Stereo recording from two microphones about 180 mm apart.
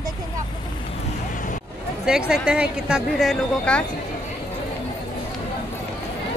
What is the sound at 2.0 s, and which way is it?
A woman's voice, 5° right (ahead or behind).